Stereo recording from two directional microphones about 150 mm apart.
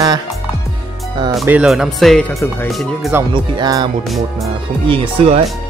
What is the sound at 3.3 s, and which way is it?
Speech, 25° right (ahead or behind).